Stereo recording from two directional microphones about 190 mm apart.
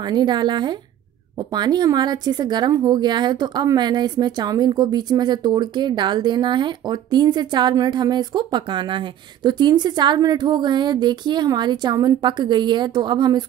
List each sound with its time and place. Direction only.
0.0 s speech: 25° right (ahead or behind)